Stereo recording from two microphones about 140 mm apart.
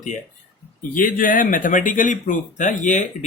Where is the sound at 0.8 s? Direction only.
75° left (ahead or behind).